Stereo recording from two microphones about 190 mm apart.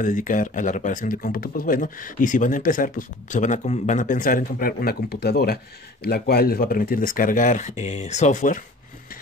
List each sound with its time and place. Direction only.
0.0 s speech: 45° left (ahead or behind)